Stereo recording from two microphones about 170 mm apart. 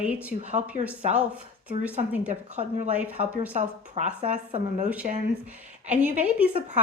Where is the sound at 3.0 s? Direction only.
10° right (ahead or behind).